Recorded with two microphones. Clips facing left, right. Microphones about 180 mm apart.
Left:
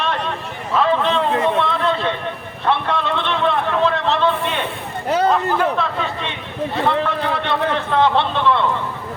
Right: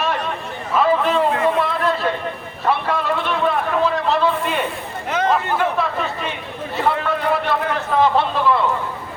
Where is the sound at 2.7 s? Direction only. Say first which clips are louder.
Even; 5° right (ahead or behind).